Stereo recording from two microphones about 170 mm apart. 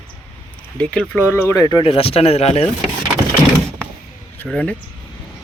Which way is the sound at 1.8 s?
35° left (ahead or behind).